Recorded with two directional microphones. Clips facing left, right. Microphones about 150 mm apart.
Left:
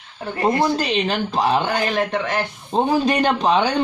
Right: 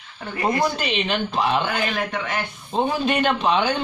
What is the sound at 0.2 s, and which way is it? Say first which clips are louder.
Speech: left 3 dB; 35° left (ahead or behind).